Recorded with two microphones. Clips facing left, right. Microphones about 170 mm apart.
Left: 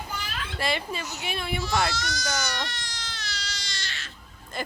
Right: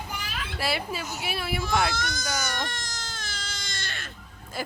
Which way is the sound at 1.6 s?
50° right (ahead or behind).